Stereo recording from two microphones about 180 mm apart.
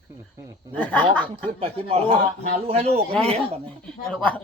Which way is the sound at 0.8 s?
5° left (ahead or behind).